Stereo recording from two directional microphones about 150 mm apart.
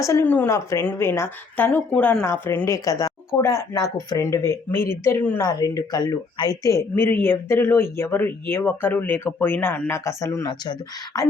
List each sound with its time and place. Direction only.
0.0 s speech: 20° left (ahead or behind)